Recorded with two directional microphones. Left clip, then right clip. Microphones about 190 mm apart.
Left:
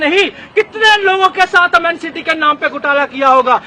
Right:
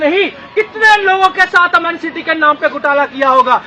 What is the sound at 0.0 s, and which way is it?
A man's voice, 20° left (ahead or behind).